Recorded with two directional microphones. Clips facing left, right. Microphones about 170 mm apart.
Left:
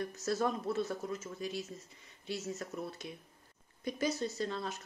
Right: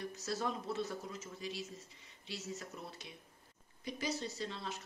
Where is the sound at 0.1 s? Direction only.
50° left (ahead or behind).